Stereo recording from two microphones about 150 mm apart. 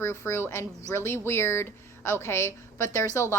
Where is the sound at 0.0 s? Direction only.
15° left (ahead or behind).